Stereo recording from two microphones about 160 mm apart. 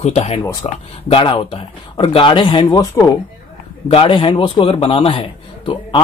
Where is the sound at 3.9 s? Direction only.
35° left (ahead or behind).